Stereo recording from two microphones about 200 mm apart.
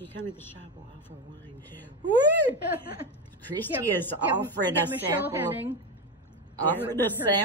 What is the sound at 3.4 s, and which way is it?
Speech, 10° left (ahead or behind).